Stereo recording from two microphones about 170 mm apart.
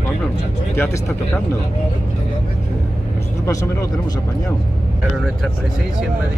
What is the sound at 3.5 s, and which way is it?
Speech, 20° left (ahead or behind).